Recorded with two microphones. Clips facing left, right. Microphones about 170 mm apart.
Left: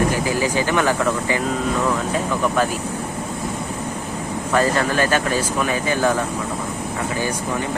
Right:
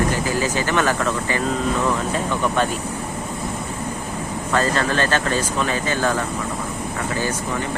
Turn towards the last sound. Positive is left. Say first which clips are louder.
# left 2 dB
turn(degrees=15)  # may be behind; listen again after turning